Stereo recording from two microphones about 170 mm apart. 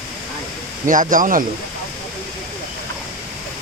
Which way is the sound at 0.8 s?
50° right (ahead or behind).